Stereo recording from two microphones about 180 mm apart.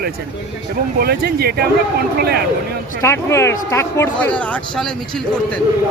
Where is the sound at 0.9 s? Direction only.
60° right (ahead or behind).